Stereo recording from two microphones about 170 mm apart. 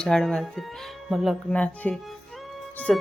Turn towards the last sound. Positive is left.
turn(degrees=0)  # may be behind; listen again after turning